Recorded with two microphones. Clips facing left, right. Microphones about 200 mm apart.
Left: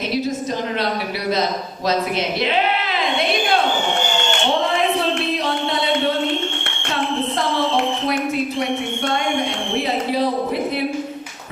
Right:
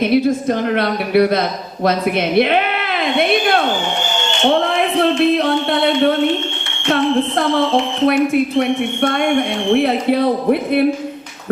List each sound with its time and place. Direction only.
0.0 s a man's voice: 60° right (ahead or behind)
4.4 s a sound: 55° right (ahead or behind)
8.0 s a man's voice: 60° right (ahead or behind)